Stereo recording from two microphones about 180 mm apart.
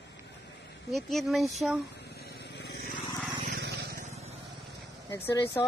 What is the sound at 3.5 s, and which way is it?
Vehicle, 65° right (ahead or behind).